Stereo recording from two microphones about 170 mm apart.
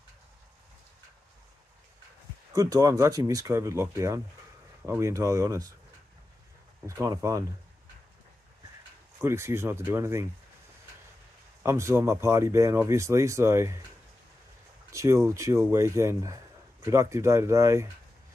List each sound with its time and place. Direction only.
2.5 s speech: 20° right (ahead or behind)
7.0 s speech: 20° right (ahead or behind)
9.2 s speech: 15° right (ahead or behind)
11.6 s speech: 15° right (ahead or behind)
14.9 s speech: 15° right (ahead or behind)